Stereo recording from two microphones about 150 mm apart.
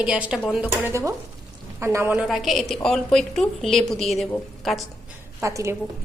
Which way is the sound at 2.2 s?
Centre (ahead or behind).